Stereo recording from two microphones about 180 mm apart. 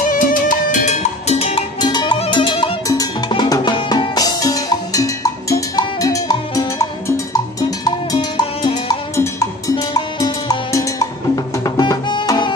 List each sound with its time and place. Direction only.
0.0 s music: 45° left (ahead or behind); by 7.2 s 20° left (ahead or behind)
7.8 s cowbell: 25° left (ahead or behind)